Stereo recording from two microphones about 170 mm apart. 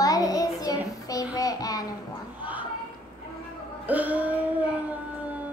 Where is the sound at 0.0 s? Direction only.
20° left (ahead or behind).